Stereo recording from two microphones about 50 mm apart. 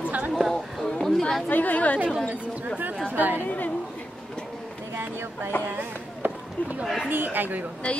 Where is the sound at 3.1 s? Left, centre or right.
Right.